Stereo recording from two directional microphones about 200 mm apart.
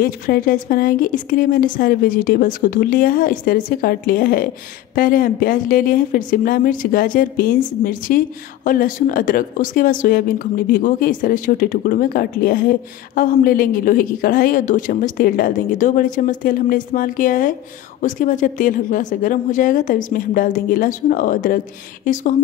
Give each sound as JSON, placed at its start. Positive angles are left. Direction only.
{"t": 0.0, "sound": "a woman's voice", "side_deg": 45}